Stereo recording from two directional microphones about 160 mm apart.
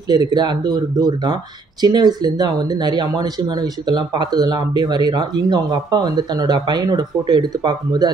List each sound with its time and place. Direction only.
0.1 s speech: 25° right (ahead or behind)